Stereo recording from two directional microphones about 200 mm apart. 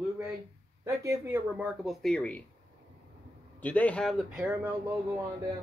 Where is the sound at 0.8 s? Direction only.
15° right (ahead or behind); by 2.4 s 5° left (ahead or behind).